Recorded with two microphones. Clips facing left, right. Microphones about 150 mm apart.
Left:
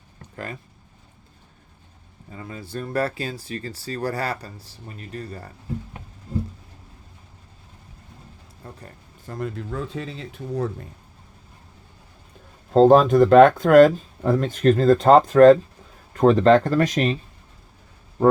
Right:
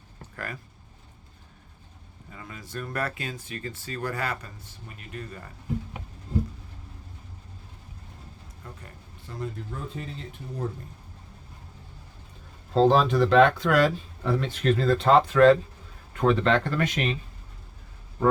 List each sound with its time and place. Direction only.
0.3 s speech: 25° left (ahead or behind)
2.3 s speech: 30° left (ahead or behind)
8.6 s speech: 40° left (ahead or behind)
9.4 s speech: 90° left
12.7 s speech: 45° left (ahead or behind)